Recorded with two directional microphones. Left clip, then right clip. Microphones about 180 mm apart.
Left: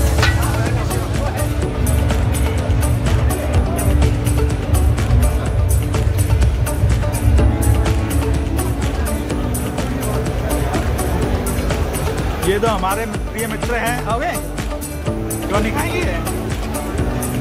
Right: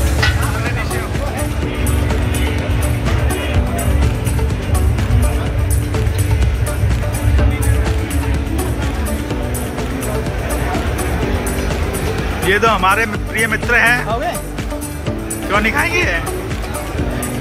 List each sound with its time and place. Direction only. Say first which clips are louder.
12.4 s speech: right 5 dB; 10° left (ahead or behind)
15.5 s speech: right 6 dB; 5° left (ahead or behind)